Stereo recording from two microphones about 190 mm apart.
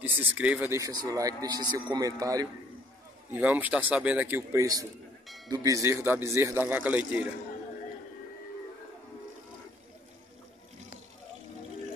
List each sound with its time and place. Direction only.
0.0 s speech: 10° right (ahead or behind)
3.3 s speech: 10° right (ahead or behind)